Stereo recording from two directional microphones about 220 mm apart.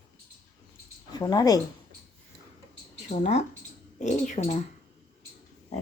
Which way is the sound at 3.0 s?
30° left (ahead or behind).